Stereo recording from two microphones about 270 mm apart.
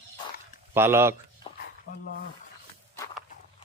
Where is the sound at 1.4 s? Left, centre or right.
Centre.